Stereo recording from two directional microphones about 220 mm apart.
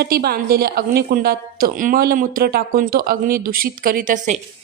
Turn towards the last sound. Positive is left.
turn(degrees=-35)  # may be behind; listen again after turning